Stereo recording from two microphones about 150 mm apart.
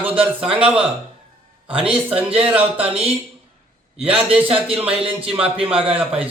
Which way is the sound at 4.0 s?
5° right (ahead or behind).